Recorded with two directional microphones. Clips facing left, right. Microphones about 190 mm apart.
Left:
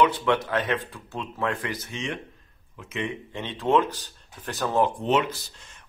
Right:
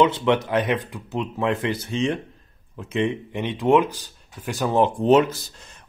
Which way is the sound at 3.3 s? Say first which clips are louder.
Right 3 dB; 15° right (ahead or behind).